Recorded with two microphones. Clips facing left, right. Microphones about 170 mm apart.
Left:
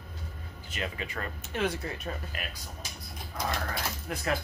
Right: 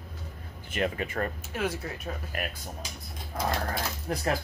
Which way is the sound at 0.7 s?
50° right (ahead or behind).